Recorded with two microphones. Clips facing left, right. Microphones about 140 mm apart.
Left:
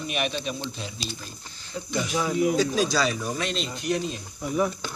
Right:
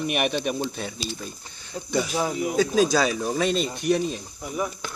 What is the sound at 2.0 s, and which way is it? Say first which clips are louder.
Speech: left 1 dB; 35° right (ahead or behind).